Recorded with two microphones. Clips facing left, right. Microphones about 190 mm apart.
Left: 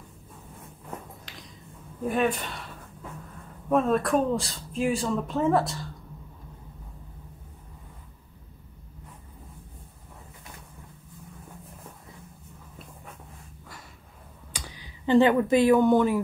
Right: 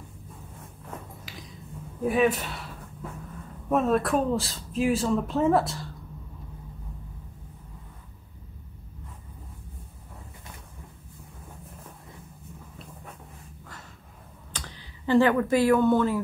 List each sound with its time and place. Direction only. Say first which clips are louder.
1.3 s a sound: right 3 dB; 5° right (ahead or behind)
2.0 s speech: right 3 dB; 5° right (ahead or behind)
14.5 s speech: even; 10° left (ahead or behind)